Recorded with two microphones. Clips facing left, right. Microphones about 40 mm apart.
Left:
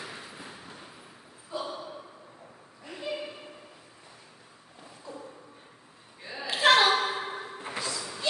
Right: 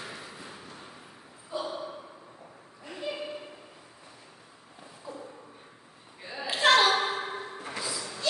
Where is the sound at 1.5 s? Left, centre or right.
Centre.